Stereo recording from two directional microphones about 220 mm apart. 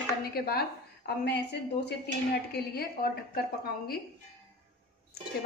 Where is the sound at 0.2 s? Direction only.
45° left (ahead or behind).